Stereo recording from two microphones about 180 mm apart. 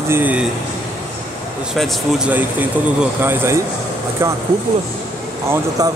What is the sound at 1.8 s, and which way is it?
Speech, centre (ahead or behind).